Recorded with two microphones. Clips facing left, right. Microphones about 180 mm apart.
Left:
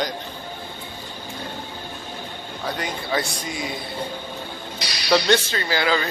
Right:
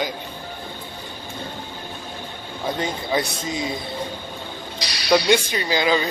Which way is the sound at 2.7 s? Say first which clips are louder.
Right 3 dB; 20° right (ahead or behind).